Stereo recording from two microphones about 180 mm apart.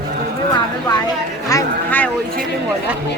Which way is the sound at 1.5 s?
15° left (ahead or behind).